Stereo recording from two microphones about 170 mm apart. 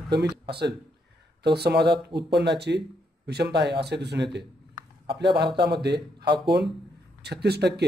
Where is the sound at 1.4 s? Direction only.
75° right (ahead or behind).